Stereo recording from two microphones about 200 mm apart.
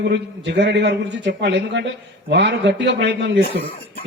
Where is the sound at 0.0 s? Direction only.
55° right (ahead or behind).